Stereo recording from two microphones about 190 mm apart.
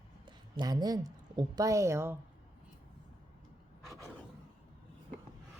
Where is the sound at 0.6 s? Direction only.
20° right (ahead or behind).